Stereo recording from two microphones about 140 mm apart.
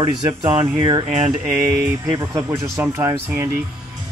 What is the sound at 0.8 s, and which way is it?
Speech, 35° right (ahead or behind).